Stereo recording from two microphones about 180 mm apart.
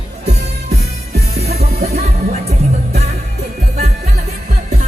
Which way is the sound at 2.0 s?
35° right (ahead or behind).